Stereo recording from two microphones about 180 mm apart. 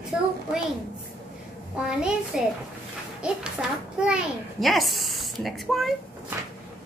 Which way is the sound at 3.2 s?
5° right (ahead or behind).